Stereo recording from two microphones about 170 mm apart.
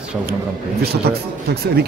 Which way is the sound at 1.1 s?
70° right (ahead or behind).